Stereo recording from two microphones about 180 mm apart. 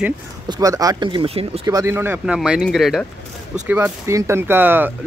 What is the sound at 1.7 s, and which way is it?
Speech, 15° right (ahead or behind).